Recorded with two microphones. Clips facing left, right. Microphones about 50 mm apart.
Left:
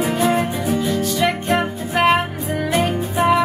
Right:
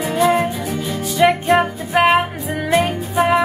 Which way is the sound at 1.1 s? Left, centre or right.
Centre.